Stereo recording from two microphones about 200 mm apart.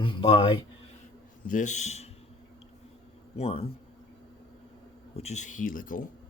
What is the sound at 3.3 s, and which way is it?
Speech, 30° left (ahead or behind).